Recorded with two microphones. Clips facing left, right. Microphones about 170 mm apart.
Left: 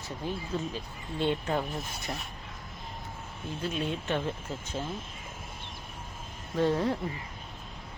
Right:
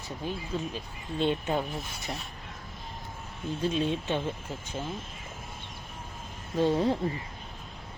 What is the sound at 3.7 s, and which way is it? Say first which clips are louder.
Speech: even; 20° right (ahead or behind).